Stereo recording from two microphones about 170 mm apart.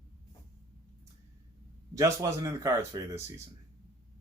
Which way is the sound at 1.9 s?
20° right (ahead or behind).